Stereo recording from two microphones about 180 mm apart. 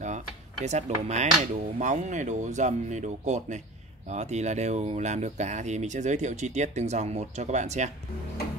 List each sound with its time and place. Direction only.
0.0 s speech: 40° right (ahead or behind)